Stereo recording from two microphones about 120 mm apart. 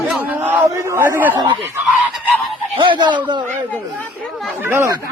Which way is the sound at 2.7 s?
40° right (ahead or behind).